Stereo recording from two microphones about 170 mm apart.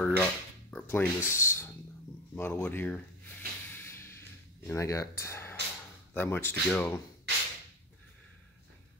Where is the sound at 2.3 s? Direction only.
15° left (ahead or behind).